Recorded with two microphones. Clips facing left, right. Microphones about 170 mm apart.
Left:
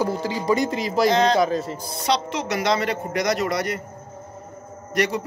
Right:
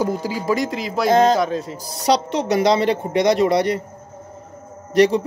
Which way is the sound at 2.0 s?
35° right (ahead or behind).